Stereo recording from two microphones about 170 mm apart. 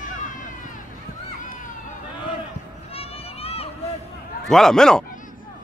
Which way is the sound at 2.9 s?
35° left (ahead or behind).